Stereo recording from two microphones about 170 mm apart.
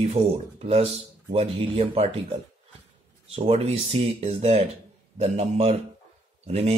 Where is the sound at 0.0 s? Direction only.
35° right (ahead or behind).